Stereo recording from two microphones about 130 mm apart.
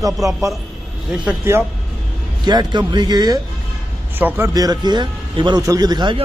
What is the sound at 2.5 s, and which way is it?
Speech, 35° right (ahead or behind).